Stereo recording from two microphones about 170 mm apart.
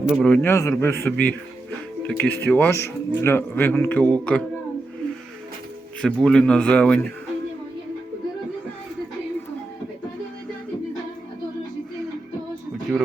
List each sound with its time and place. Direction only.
0.0 s a man's voice: 5° left (ahead or behind)
6.0 s speech: 5° left (ahead or behind)